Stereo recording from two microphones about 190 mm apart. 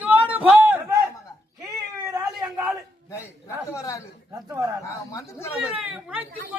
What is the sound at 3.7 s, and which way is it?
Speech, 15° left (ahead or behind).